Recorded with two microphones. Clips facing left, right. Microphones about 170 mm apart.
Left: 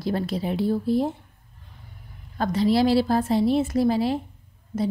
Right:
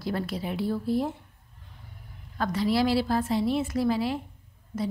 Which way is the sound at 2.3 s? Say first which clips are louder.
Left 4 dB; 25° left (ahead or behind).